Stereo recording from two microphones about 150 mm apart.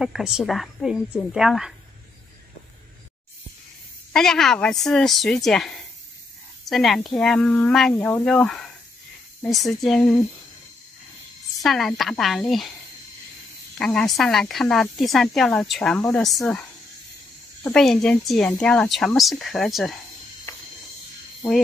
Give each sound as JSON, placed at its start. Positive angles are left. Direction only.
{"t": 0.0, "sound": "speech", "side_deg": -5}
{"t": 4.1, "sound": "speech", "side_deg": 5}
{"t": 11.6, "sound": "speech", "side_deg": 0}
{"t": 13.7, "sound": "speech", "side_deg": 5}
{"t": 17.6, "sound": "speech", "side_deg": 5}